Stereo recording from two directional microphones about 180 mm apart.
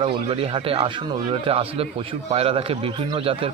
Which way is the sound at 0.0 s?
30° right (ahead or behind).